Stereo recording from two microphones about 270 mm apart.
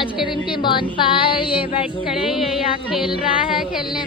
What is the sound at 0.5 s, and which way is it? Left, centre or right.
Speech, centre.